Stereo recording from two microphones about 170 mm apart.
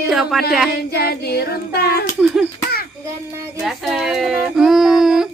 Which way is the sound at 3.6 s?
Centre (ahead or behind).